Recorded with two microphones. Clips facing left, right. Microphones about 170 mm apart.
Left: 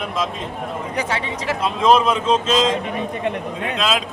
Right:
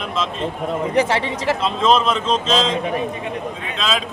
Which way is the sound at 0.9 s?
30° right (ahead or behind).